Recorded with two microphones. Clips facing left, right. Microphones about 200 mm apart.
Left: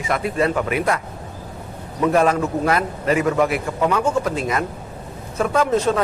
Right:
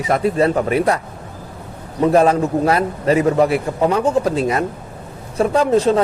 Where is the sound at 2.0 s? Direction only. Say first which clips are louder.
Right 4 dB; 35° right (ahead or behind).